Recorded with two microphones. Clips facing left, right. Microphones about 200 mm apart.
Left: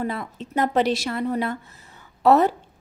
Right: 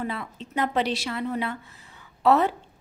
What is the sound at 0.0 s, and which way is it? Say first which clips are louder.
A woman's voice: left 4 dB; 45° left (ahead or behind).